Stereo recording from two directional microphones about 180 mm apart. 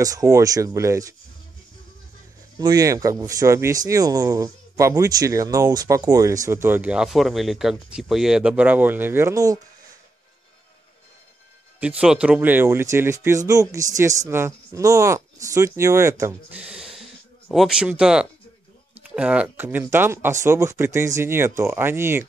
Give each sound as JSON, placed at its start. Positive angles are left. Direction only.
{"t": 0.0, "sound": "speech", "side_deg": -20}
{"t": 2.6, "sound": "speech", "side_deg": -20}
{"t": 11.8, "sound": "speech", "side_deg": -5}
{"t": 16.6, "sound": "a sound", "side_deg": -5}
{"t": 19.0, "sound": "speech", "side_deg": -5}